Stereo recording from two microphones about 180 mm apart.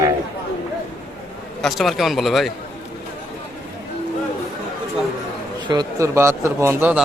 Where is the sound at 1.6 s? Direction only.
Centre (ahead or behind).